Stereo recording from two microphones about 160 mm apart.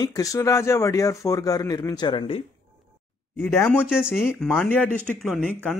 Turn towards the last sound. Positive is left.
turn(degrees=5)  # may be behind; listen again after turning